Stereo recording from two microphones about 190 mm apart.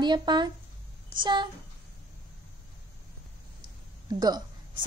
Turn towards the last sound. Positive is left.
turn(degrees=-20)  # may be behind; listen again after turning